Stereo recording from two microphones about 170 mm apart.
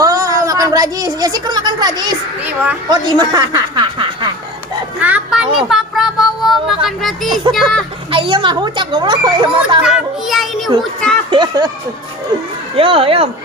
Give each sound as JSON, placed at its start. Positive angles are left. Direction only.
{"t": 0.0, "sound": "a child's voice", "side_deg": -20}
{"t": 4.9, "sound": "speech", "side_deg": -10}
{"t": 8.1, "sound": "a child's voice", "side_deg": -30}
{"t": 9.8, "sound": "speech", "side_deg": 0}
{"t": 11.3, "sound": "a child's voice", "side_deg": -25}
{"t": 12.7, "sound": "speech", "side_deg": -30}